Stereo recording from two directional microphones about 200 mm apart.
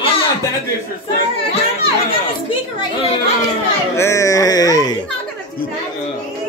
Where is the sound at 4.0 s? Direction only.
15° left (ahead or behind).